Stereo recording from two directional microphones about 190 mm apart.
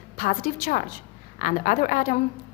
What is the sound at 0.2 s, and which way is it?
A woman's voice, 50° left (ahead or behind).